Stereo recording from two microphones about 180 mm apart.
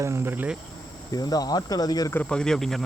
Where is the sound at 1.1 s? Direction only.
20° left (ahead or behind).